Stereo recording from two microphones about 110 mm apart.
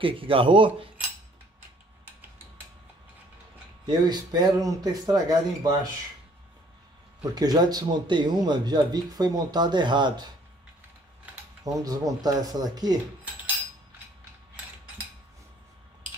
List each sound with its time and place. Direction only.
0.0 s speech: 55° right (ahead or behind)
3.8 s speech: 40° right (ahead or behind)
7.2 s speech: 35° right (ahead or behind)
11.6 s speech: 35° right (ahead or behind)